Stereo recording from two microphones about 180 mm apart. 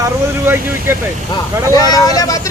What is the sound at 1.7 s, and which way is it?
Speech, 20° left (ahead or behind).